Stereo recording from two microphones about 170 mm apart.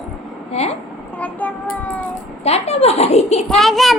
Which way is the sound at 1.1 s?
10° left (ahead or behind).